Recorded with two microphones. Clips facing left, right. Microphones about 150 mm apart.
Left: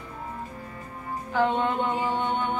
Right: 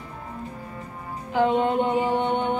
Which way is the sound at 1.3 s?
15° right (ahead or behind).